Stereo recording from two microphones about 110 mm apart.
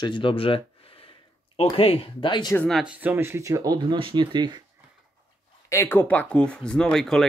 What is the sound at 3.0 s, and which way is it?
Speech, 20° right (ahead or behind).